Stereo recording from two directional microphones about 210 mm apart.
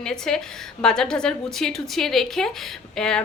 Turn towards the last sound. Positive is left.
turn(degrees=5)  # may be behind; listen again after turning